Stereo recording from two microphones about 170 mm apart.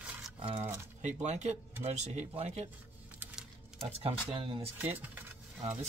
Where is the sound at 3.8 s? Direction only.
35° right (ahead or behind).